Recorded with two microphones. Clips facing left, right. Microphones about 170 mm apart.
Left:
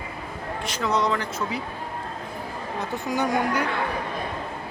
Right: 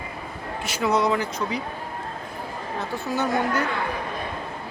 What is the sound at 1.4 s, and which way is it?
Speech, 5° left (ahead or behind).